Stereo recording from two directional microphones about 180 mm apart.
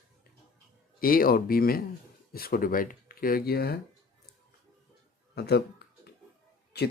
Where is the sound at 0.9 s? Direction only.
55° left (ahead or behind).